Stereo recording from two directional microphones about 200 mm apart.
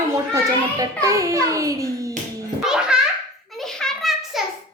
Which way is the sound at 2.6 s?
5° right (ahead or behind).